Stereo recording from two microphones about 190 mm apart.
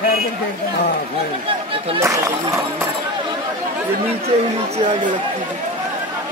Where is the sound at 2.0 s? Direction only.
15° right (ahead or behind).